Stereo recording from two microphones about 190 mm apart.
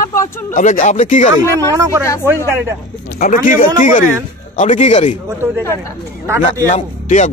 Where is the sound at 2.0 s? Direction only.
15° left (ahead or behind).